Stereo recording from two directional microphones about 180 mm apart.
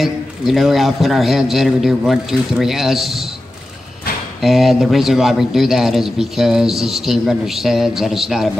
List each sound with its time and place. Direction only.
0.0 s a man's voice: centre (ahead or behind)
4.4 s a man's voice: centre (ahead or behind)